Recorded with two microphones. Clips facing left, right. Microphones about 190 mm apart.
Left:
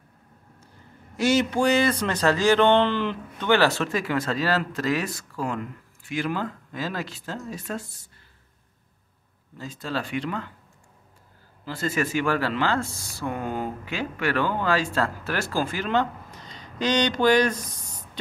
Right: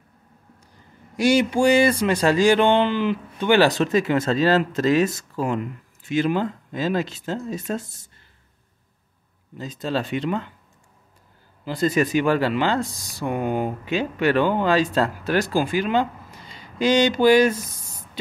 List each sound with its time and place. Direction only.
1.1 s speech: 15° right (ahead or behind)
9.6 s speech: 20° right (ahead or behind)
11.6 s speech: 15° right (ahead or behind)